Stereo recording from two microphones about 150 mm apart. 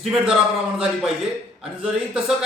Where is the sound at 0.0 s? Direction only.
Centre (ahead or behind).